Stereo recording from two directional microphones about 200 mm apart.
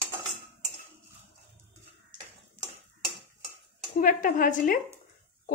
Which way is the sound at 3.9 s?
40° left (ahead or behind).